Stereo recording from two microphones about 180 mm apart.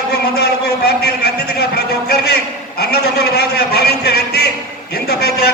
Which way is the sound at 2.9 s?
65° left (ahead or behind).